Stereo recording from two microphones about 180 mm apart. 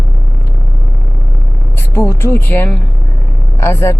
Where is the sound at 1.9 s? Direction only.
15° left (ahead or behind).